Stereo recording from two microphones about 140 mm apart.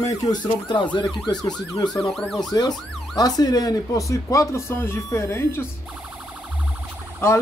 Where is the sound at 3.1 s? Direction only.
25° left (ahead or behind).